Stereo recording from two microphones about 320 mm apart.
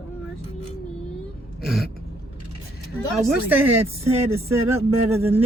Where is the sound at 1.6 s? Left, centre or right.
Centre.